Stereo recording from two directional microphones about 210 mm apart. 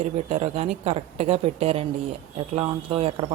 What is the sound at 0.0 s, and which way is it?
Speech, 30° right (ahead or behind).